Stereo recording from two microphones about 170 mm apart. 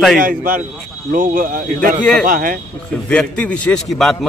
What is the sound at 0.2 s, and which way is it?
A man's voice, 55° right (ahead or behind).